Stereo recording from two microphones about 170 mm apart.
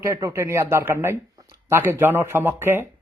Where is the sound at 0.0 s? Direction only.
15° right (ahead or behind).